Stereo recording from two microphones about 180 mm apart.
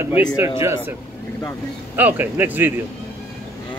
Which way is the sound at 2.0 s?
10° right (ahead or behind).